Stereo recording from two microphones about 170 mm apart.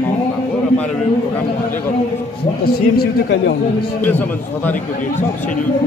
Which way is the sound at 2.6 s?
75° left (ahead or behind).